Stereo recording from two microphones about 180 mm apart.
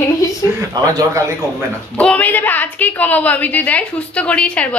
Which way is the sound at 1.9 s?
5° left (ahead or behind).